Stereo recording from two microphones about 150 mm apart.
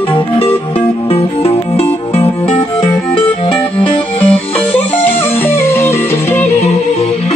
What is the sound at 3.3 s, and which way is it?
Music, 40° left (ahead or behind).